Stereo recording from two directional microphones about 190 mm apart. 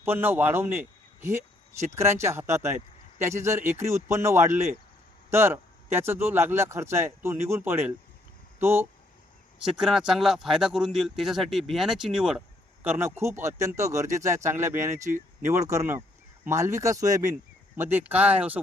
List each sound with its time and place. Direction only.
0.0 s a man's voice: 10° right (ahead or behind)